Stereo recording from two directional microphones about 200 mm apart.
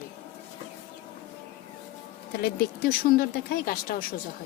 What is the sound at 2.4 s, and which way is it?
A woman's voice, 50° left (ahead or behind).